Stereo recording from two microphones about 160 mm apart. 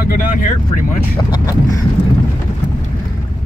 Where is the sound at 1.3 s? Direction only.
20° left (ahead or behind).